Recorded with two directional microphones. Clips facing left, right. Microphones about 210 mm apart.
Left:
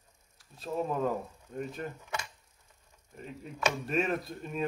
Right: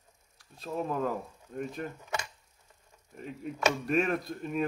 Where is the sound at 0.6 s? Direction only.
Centre (ahead or behind).